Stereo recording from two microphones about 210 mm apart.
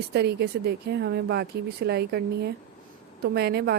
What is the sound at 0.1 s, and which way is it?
A woman's voice, 50° right (ahead or behind).